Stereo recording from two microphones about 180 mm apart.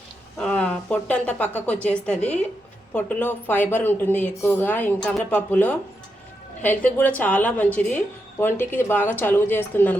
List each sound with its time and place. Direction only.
0.3 s a woman's voice: 5° left (ahead or behind)